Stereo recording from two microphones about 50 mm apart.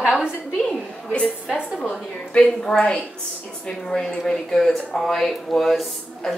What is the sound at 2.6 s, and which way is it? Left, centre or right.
A woman's voice, centre.